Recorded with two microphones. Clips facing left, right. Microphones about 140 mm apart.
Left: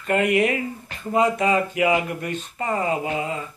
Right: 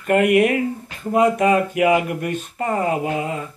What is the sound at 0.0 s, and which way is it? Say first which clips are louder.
Speech: right 4 dB; 55° right (ahead or behind).